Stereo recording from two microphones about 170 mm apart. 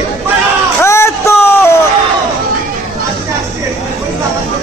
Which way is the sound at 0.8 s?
15° left (ahead or behind).